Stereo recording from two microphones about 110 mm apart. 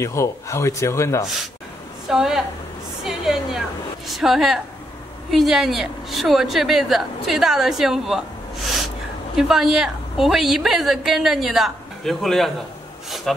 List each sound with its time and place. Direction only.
0.0 s a man's voice: 25° left (ahead or behind)
2.0 s a woman's voice: 5° right (ahead or behind)
3.0 s a sound: 5° right (ahead or behind)
4.1 s a woman's voice: centre (ahead or behind)
9.4 s a woman's voice: 5° right (ahead or behind)